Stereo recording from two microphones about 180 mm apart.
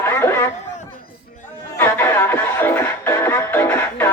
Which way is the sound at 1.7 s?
10° left (ahead or behind).